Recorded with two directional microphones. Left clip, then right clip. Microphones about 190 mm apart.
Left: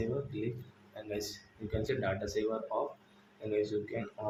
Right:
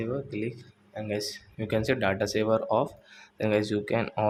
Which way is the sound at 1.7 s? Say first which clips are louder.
Right 8 dB; 45° right (ahead or behind).